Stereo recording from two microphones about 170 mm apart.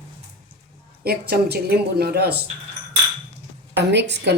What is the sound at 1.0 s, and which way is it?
Speech, 65° right (ahead or behind).